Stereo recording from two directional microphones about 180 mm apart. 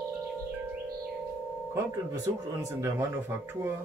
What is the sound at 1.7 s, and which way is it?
Speech, 15° right (ahead or behind).